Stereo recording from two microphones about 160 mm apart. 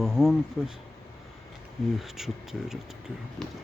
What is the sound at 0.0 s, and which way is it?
Speech, 5° left (ahead or behind).